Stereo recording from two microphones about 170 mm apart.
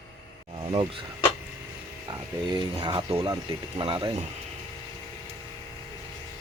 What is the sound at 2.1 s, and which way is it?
Mechanisms, 25° right (ahead or behind).